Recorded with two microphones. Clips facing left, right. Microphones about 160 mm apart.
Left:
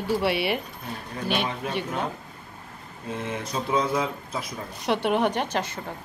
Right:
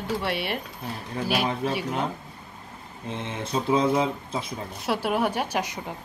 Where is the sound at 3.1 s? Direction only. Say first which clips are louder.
Right 1 dB; 30° right (ahead or behind).